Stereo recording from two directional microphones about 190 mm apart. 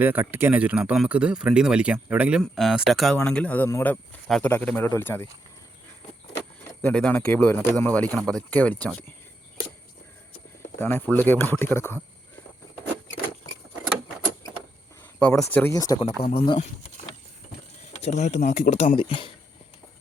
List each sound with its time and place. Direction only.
0.0 s speech: 10° right (ahead or behind); by 5.3 s 10° left (ahead or behind)
6.8 s speech: 5° left (ahead or behind)
10.8 s speech: 10° left (ahead or behind)
15.2 s speech: 5° left (ahead or behind); by 16.6 s 30° left (ahead or behind)
18.0 s speech: 40° left (ahead or behind)